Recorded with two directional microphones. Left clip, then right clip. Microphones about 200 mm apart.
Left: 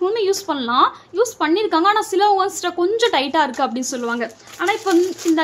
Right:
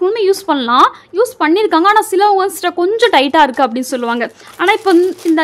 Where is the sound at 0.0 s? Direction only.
25° right (ahead or behind).